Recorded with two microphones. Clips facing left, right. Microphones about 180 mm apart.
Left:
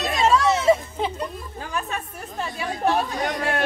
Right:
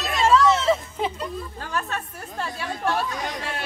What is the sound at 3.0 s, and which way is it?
Speech, 50° left (ahead or behind).